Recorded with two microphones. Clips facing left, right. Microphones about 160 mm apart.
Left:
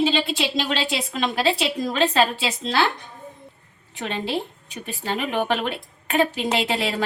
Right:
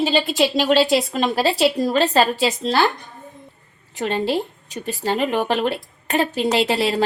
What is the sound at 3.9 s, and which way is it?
A woman's voice, 40° right (ahead or behind).